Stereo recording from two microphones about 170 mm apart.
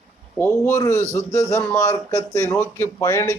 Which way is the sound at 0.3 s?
15° left (ahead or behind).